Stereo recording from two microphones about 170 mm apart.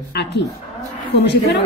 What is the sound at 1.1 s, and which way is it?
Speech, 80° left.